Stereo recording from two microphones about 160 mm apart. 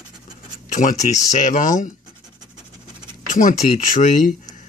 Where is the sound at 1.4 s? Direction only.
55° left (ahead or behind).